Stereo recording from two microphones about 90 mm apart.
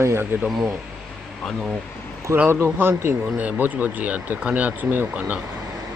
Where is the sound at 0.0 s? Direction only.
30° right (ahead or behind).